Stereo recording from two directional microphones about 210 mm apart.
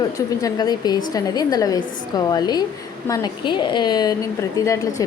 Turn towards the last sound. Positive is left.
turn(degrees=15)  # may be behind; listen again after turning